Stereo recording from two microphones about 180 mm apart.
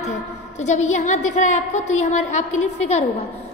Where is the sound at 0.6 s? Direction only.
40° left (ahead or behind).